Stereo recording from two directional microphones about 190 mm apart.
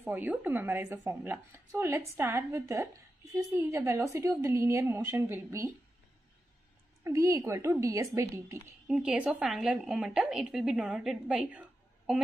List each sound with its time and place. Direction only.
0.0 s speech: 10° right (ahead or behind)
7.1 s speech: 15° right (ahead or behind)
8.8 s a woman's voice: 5° right (ahead or behind)